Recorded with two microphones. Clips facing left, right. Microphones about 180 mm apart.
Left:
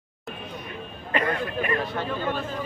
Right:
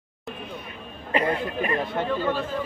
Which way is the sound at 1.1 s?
25° right (ahead or behind).